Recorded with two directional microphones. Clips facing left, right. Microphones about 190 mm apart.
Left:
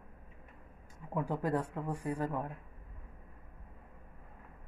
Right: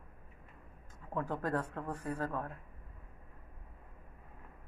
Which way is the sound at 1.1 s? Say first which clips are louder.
Left 2 dB; 10° left (ahead or behind).